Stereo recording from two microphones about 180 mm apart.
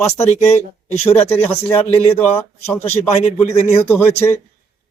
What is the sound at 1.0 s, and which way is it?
Speech, 35° left (ahead or behind).